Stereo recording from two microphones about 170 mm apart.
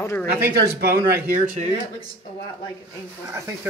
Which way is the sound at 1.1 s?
50° right (ahead or behind).